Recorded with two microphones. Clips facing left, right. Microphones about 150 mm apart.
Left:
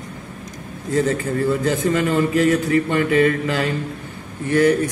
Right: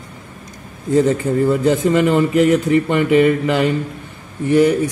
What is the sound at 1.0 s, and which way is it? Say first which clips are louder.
A man's voice: right 5 dB; 20° right (ahead or behind).